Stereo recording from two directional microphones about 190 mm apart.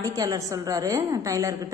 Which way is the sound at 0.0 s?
20° right (ahead or behind).